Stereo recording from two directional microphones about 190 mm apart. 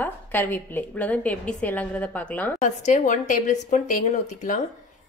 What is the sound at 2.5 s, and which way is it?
Speech, 40° left (ahead or behind).